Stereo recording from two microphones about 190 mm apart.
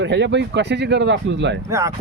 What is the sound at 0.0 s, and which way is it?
Speech, 65° right (ahead or behind).